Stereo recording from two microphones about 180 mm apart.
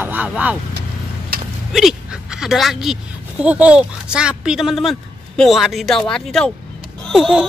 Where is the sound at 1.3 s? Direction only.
55° right (ahead or behind).